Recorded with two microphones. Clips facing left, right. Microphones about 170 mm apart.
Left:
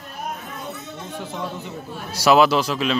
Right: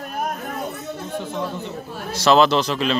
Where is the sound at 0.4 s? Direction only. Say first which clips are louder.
Right 5 dB; 55° right (ahead or behind).